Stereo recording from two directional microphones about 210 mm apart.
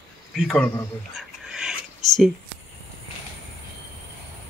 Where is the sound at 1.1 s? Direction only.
5° right (ahead or behind).